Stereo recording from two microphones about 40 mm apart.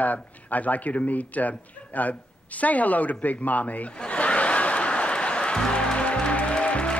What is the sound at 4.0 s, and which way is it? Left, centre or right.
Music, left.